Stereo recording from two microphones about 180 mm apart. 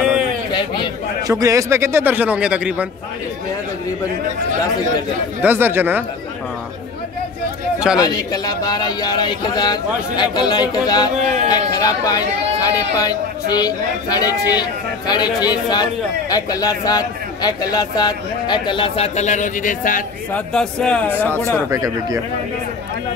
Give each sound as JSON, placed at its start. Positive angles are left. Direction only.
{"t": 0.5, "sound": "a sound", "side_deg": 25}
{"t": 1.2, "sound": "speech", "side_deg": -20}
{"t": 5.4, "sound": "speech", "side_deg": -10}
{"t": 8.0, "sound": "speech", "side_deg": 20}
{"t": 11.1, "sound": "speech", "side_deg": -40}
{"t": 11.4, "sound": "speech", "side_deg": 20}
{"t": 20.3, "sound": "speech", "side_deg": 5}
{"t": 21.6, "sound": "speech", "side_deg": -20}